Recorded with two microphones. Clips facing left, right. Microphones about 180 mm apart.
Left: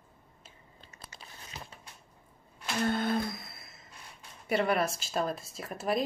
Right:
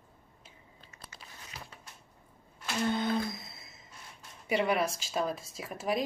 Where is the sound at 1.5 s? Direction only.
25° left (ahead or behind).